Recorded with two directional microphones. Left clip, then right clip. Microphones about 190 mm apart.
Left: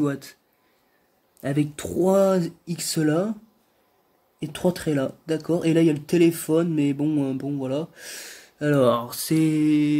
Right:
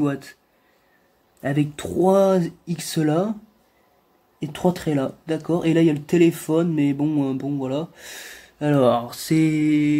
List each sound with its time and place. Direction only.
0.0 s speech: 20° left (ahead or behind)
1.4 s speech: 15° left (ahead or behind)
4.4 s speech: 15° left (ahead or behind)